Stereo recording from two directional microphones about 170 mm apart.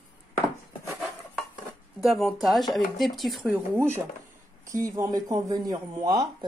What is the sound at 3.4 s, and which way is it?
A woman's voice, 10° right (ahead or behind).